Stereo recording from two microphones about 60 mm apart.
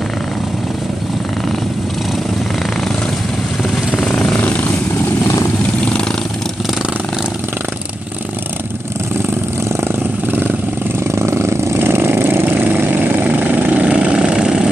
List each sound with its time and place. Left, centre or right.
3.7 s vehicle: centre
4.1 s vehicle: left
9.8 s vehicle: right
11.1 s vehicle: right; by 14.7 s centre